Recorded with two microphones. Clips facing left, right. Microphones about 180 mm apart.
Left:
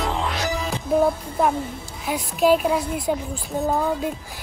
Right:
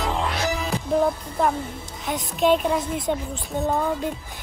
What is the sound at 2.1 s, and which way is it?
Speech, 5° left (ahead or behind).